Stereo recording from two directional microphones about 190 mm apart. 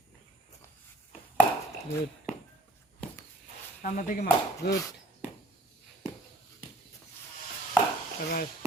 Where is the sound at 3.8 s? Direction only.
45° left (ahead or behind).